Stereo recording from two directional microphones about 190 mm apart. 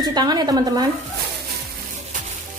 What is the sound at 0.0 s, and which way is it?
Speech, 20° right (ahead or behind).